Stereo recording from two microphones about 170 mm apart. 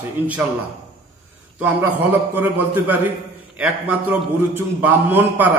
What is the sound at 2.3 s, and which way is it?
A man's voice, 10° right (ahead or behind).